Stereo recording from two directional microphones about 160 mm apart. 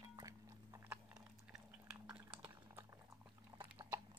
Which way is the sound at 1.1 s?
5° right (ahead or behind).